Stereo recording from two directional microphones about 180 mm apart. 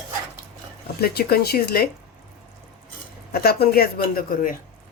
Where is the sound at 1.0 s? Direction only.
60° left (ahead or behind).